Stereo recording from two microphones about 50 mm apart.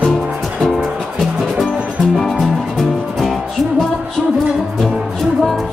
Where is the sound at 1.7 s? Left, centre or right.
Right.